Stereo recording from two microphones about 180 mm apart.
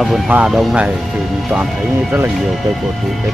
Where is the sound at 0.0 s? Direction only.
5° right (ahead or behind).